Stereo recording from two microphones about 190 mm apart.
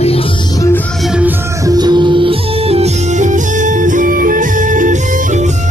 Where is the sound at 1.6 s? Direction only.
20° right (ahead or behind); by 5.5 s 40° right (ahead or behind).